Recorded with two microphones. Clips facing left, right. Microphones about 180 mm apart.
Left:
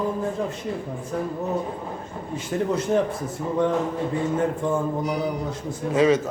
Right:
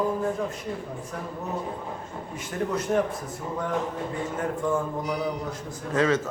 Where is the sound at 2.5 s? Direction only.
25° left (ahead or behind).